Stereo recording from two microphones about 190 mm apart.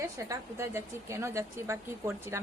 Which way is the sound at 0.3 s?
15° right (ahead or behind).